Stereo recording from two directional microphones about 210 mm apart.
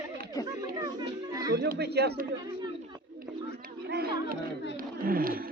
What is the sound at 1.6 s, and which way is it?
Speech, 50° right (ahead or behind).